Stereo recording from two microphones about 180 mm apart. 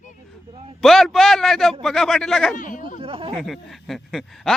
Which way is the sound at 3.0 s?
30° right (ahead or behind).